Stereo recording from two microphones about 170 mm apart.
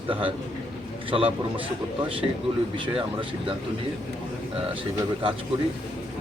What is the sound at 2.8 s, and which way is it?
Speech, 30° right (ahead or behind).